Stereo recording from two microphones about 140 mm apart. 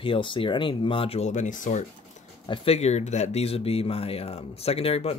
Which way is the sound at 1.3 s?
65° left (ahead or behind).